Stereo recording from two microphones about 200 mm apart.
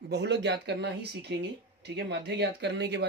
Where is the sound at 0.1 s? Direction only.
60° right (ahead or behind).